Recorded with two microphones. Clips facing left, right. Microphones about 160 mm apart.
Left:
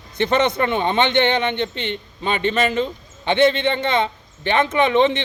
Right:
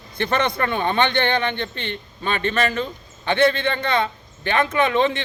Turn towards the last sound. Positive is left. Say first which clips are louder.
# left 3 dB
turn(degrees=20)  # may be behind; listen again after turning